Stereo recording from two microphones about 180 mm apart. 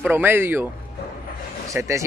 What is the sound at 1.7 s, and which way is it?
Speech, 15° right (ahead or behind).